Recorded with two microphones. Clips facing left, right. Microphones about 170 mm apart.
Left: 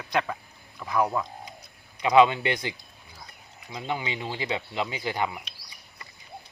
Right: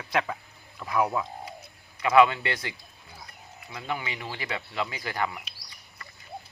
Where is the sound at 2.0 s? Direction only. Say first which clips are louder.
Left 1 dB; 20° left (ahead or behind).